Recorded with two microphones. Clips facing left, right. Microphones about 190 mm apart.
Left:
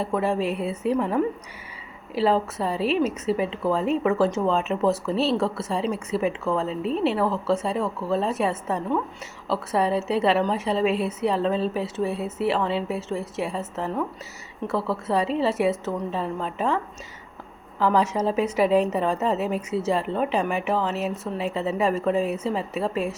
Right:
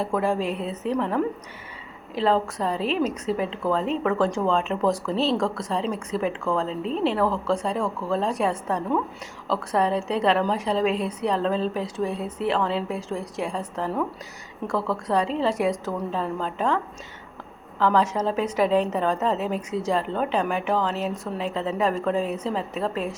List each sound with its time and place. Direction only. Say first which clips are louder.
0.0 s a woman's voice: even; centre (ahead or behind)